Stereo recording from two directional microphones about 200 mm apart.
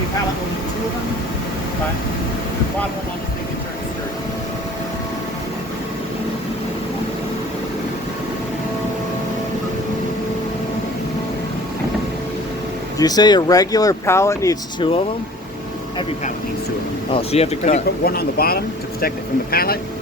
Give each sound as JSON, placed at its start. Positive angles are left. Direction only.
{"t": 13.0, "sound": "speech", "side_deg": 20}
{"t": 17.1, "sound": "speech", "side_deg": 30}
{"t": 18.0, "sound": "speech", "side_deg": 50}